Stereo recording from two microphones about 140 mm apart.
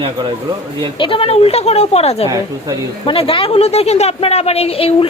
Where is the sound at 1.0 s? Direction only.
40° left (ahead or behind).